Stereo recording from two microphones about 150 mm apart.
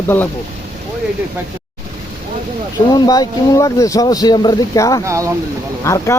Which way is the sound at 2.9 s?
25° left (ahead or behind).